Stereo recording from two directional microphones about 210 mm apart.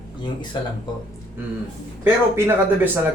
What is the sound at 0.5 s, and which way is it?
Speech, 20° left (ahead or behind).